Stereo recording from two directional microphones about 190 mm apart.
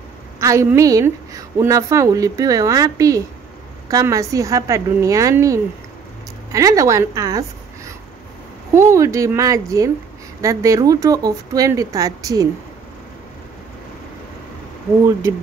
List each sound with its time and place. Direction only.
0.4 s a woman's voice: 15° right (ahead or behind)